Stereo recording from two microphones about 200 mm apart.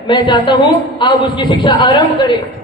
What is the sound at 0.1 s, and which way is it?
A man's voice, 25° left (ahead or behind).